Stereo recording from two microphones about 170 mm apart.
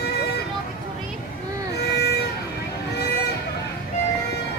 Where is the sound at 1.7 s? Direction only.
75° left (ahead or behind).